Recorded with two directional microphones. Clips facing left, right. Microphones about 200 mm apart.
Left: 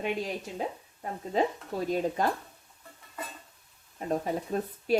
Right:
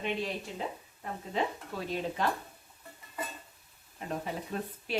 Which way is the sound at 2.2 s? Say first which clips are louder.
Even; 45° left (ahead or behind).